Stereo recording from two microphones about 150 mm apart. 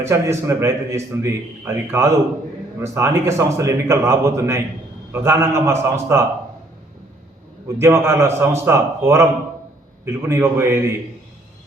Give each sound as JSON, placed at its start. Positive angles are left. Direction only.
{"t": 0.0, "sound": "a man's voice", "side_deg": -20}
{"t": 7.8, "sound": "a man's voice", "side_deg": -20}